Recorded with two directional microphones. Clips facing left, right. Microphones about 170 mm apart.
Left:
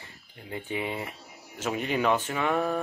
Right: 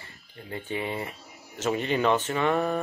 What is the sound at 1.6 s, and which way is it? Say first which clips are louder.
Speech: right 2 dB; 5° left (ahead or behind).